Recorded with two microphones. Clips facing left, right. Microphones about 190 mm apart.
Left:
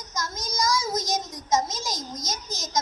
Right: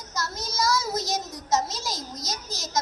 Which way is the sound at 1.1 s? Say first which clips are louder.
Left 2 dB; 20° left (ahead or behind).